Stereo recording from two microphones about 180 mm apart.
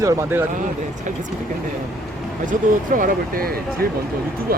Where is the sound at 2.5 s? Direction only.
45° right (ahead or behind).